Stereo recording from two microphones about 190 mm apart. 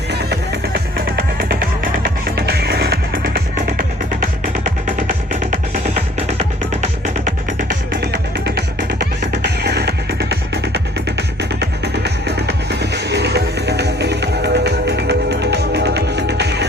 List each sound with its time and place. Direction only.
0.1 s music: 60° right (ahead or behind)
7.3 s music: 60° right (ahead or behind)